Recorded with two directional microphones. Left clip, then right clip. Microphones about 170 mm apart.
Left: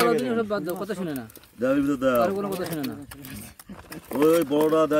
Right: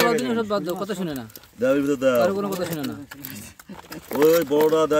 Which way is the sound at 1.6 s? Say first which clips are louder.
Right 3 dB; 25° right (ahead or behind).